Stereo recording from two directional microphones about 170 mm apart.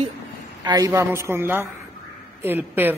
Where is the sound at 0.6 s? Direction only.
20° right (ahead or behind).